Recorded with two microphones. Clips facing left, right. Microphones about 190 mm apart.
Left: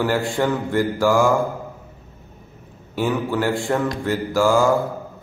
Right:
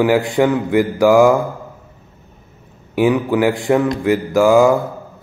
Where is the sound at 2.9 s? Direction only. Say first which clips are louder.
Right 7 dB; 15° right (ahead or behind).